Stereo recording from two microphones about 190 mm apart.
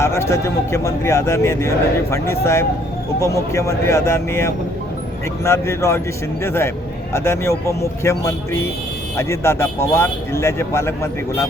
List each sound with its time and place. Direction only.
0.0 s a man's voice: 15° left (ahead or behind)